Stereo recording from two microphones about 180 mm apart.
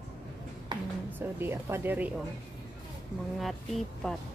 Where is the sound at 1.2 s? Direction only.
10° right (ahead or behind).